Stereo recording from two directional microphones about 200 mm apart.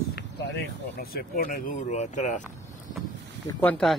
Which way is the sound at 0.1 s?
55° left (ahead or behind).